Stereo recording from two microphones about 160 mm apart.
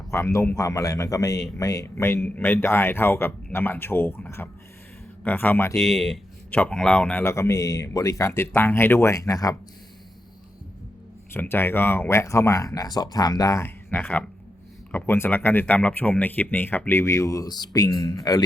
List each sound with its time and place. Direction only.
0.1 s a man's voice: 20° left (ahead or behind)
5.7 s a man's voice: centre (ahead or behind); by 9.6 s 20° left (ahead or behind)
11.3 s a man's voice: 15° left (ahead or behind)